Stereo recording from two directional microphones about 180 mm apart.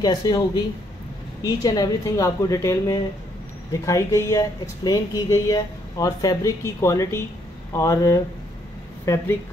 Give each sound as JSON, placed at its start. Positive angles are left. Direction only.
{"t": 0.0, "sound": "speech", "side_deg": 20}